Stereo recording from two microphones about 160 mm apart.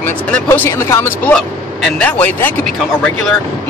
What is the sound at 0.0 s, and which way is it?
Speech, 10° left (ahead or behind).